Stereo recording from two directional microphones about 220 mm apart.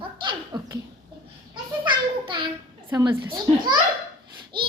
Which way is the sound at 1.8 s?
20° right (ahead or behind).